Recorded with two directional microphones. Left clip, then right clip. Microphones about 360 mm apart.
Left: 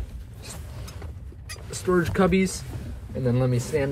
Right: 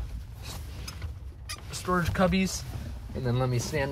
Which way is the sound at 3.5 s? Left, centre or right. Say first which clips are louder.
Left 5 dB; right.